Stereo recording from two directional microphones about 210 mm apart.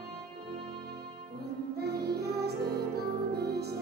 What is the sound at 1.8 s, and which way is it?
Music, 50° right (ahead or behind).